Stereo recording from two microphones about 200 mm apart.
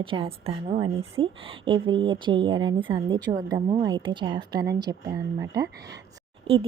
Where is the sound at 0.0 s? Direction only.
25° right (ahead or behind).